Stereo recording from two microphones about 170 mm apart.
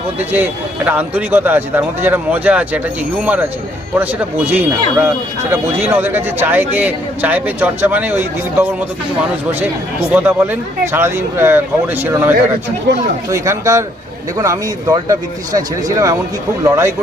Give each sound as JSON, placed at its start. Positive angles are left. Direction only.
{"t": 0.2, "sound": "speech", "side_deg": -10}
{"t": 3.9, "sound": "speech", "side_deg": -10}
{"t": 10.1, "sound": "speech", "side_deg": -10}
{"t": 13.3, "sound": "speech", "side_deg": -20}